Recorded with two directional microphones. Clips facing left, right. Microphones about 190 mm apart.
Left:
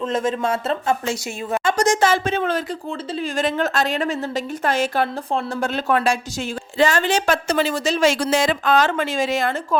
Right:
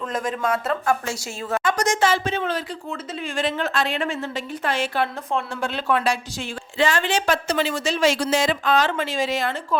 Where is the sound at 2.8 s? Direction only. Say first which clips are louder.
Left 4 dB; 30° left (ahead or behind).